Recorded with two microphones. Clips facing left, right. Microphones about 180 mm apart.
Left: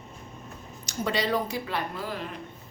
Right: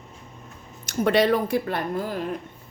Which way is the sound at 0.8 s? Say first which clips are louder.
Right 9 dB; 55° right (ahead or behind).